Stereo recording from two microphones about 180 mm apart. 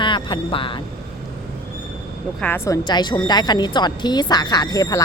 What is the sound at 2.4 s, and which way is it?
A woman's voice, 15° left (ahead or behind).